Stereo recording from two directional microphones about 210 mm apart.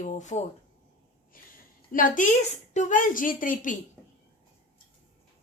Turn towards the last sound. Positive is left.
turn(degrees=40)  # may be behind; listen again after turning